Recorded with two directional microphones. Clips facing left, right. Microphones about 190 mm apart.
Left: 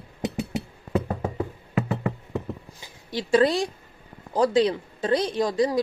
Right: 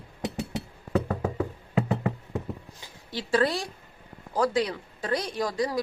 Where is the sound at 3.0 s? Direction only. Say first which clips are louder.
Left 5 dB; 15° left (ahead or behind).